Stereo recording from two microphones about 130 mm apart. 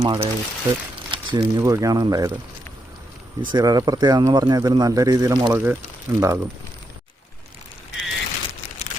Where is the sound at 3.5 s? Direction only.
30° right (ahead or behind).